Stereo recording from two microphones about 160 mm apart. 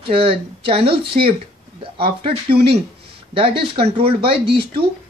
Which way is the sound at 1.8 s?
35° right (ahead or behind).